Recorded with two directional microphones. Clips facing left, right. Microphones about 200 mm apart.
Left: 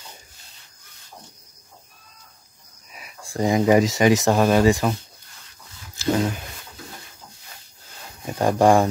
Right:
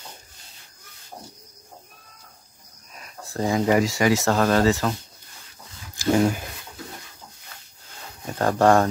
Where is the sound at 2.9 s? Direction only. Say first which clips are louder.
Even; 10° left (ahead or behind).